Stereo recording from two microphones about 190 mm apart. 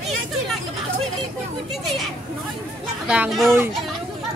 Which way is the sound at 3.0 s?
5° right (ahead or behind).